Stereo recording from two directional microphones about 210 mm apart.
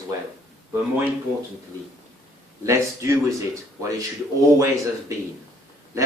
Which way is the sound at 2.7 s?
15° right (ahead or behind).